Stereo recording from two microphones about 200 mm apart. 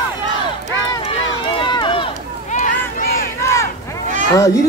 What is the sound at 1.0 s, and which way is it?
Run, 25° left (ahead or behind).